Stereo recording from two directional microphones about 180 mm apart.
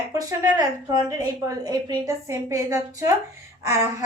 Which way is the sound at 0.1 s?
20° right (ahead or behind).